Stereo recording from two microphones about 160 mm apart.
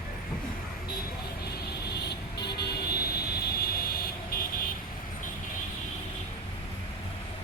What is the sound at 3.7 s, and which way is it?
Vehicle, 65° left (ahead or behind).